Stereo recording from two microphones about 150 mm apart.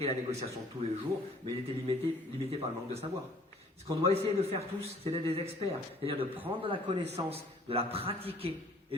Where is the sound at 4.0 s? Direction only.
40° right (ahead or behind).